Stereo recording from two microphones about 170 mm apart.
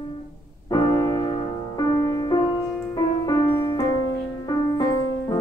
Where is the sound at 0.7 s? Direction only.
20° left (ahead or behind).